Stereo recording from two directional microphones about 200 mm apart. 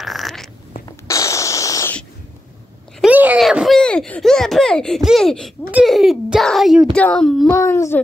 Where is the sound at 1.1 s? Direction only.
15° left (ahead or behind).